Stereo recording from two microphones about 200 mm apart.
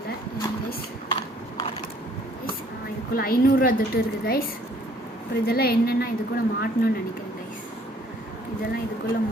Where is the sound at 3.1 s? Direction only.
45° left (ahead or behind).